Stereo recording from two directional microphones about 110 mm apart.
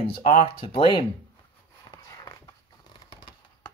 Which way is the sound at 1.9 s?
30° left (ahead or behind).